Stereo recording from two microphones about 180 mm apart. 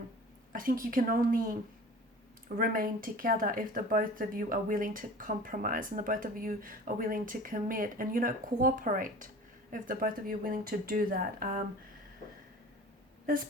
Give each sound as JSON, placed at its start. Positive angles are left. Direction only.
{"t": 0.5, "sound": "speech", "side_deg": -50}
{"t": 2.6, "sound": "speech", "side_deg": -55}